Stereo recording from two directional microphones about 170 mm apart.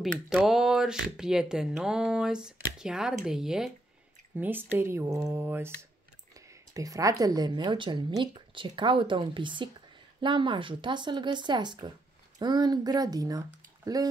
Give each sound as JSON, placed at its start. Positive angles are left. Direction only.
{"t": 0.0, "sound": "speech", "side_deg": -5}
{"t": 6.7, "sound": "a woman's voice", "side_deg": -20}